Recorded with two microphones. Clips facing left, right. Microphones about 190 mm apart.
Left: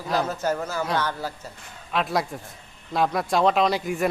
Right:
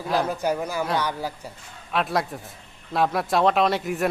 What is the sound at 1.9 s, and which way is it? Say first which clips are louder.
Speech: even; centre (ahead or behind).